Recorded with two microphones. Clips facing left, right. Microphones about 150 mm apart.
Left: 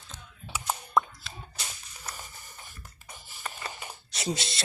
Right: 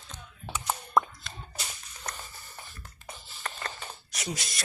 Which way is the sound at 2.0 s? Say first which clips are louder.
Right 2 dB; 15° left (ahead or behind).